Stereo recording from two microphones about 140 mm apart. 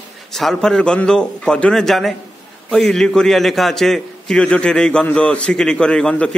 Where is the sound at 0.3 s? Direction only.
Centre (ahead or behind).